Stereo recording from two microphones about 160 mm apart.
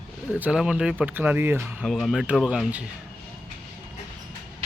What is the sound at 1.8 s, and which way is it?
Speech, centre (ahead or behind).